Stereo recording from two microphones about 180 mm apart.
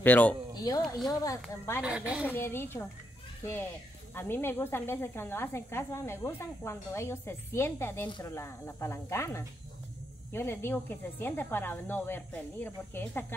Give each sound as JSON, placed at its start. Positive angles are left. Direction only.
{"t": 0.0, "sound": "speech", "side_deg": 10}
{"t": 0.6, "sound": "speech", "side_deg": 20}
{"t": 1.8, "sound": "a woman's voice", "side_deg": -5}
{"t": 2.2, "sound": "speech", "side_deg": 10}
{"t": 4.1, "sound": "speech", "side_deg": 10}